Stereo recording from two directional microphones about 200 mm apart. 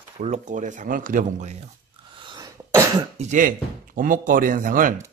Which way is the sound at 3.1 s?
35° right (ahead or behind).